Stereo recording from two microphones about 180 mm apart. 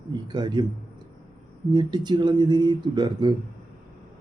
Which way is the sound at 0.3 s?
25° right (ahead or behind).